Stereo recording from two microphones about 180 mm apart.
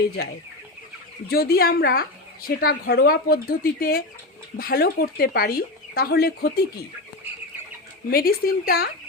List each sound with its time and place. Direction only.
1.3 s speech: 55° left (ahead or behind)
8.1 s speech: 55° left (ahead or behind)